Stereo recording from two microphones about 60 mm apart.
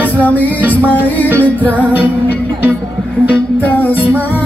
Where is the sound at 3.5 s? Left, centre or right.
Left.